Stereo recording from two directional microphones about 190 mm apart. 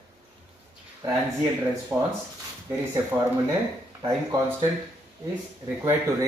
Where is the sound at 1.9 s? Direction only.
5° right (ahead or behind).